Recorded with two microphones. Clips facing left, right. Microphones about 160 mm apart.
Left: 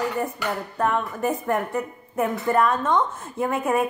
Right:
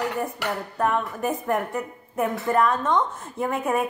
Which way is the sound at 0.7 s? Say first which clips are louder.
Even; 5° right (ahead or behind).